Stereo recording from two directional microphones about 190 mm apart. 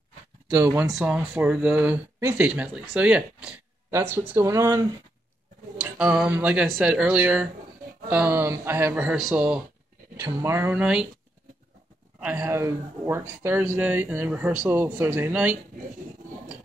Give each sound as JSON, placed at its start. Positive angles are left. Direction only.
{"t": 0.5, "sound": "speech", "side_deg": -15}
{"t": 0.9, "sound": "speech", "side_deg": -5}
{"t": 5.8, "sound": "speech", "side_deg": -5}
{"t": 10.1, "sound": "speech", "side_deg": -15}
{"t": 12.2, "sound": "speech", "side_deg": -10}